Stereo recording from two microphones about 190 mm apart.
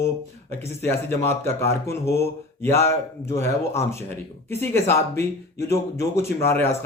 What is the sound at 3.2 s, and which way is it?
Speech, 15° left (ahead or behind).